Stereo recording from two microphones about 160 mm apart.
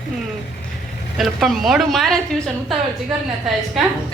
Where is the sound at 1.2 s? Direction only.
Centre (ahead or behind).